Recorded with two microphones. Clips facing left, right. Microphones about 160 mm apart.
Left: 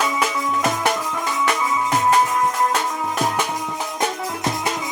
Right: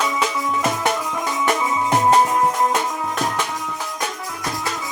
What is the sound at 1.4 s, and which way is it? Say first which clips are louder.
Music: right 1 dB; 25° right (ahead or behind).